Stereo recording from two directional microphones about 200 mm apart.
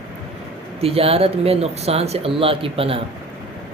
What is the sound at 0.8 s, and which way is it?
Speech, 30° right (ahead or behind).